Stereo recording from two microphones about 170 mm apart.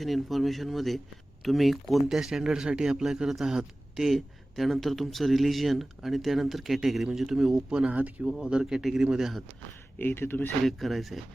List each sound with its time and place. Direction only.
0.0 s speech: centre (ahead or behind)
10.0 s speech: 10° left (ahead or behind)